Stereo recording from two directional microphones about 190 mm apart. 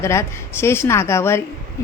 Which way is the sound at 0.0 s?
15° left (ahead or behind).